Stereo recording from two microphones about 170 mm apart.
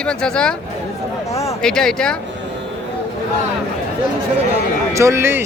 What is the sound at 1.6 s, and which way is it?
Speech, 5° left (ahead or behind).